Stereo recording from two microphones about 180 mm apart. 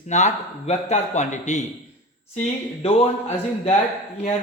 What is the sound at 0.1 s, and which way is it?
A man's voice, 40° left (ahead or behind).